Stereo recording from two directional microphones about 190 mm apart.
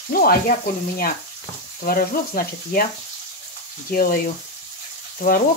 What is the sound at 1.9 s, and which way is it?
Speech, 50° left (ahead or behind).